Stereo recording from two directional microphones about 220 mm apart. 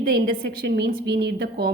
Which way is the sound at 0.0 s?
45° right (ahead or behind).